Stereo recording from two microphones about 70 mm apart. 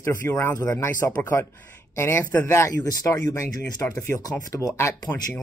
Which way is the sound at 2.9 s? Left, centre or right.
Left.